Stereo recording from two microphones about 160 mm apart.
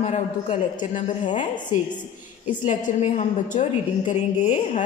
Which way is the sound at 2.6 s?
45° left (ahead or behind).